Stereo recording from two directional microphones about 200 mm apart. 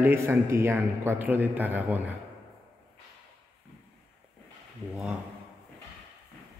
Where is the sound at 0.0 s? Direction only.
10° right (ahead or behind).